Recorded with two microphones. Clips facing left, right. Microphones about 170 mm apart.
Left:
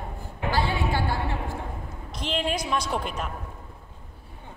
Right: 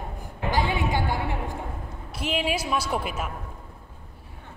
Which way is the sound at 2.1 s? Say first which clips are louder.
Right 1 dB; 5° right (ahead or behind).